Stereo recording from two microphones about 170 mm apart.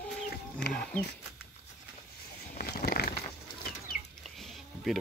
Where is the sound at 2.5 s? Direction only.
60° left (ahead or behind).